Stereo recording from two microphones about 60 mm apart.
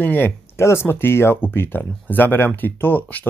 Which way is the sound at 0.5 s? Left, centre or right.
Left.